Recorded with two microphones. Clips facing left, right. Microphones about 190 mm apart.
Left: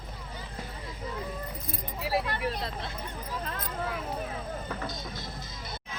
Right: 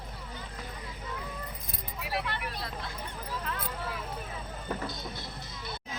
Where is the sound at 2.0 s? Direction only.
30° left (ahead or behind).